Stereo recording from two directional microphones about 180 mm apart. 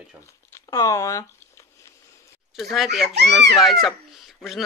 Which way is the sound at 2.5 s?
Centre (ahead or behind).